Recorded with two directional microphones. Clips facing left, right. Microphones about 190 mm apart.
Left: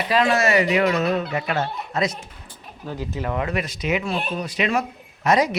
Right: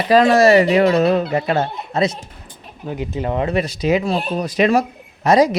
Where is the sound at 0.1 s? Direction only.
40° right (ahead or behind).